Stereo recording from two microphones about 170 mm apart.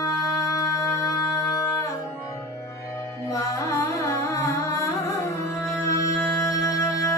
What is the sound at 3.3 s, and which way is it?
Music, 20° left (ahead or behind).